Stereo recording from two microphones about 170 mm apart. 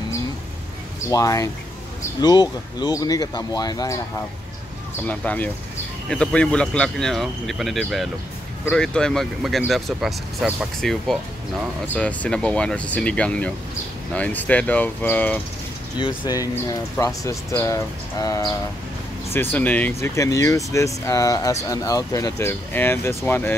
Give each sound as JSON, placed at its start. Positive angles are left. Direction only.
{"t": 1.1, "sound": "speech", "side_deg": 20}
{"t": 5.0, "sound": "speech", "side_deg": 10}
{"t": 16.0, "sound": "speech", "side_deg": 20}